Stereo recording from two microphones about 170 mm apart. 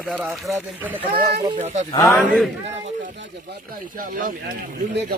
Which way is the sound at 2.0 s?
Centre (ahead or behind).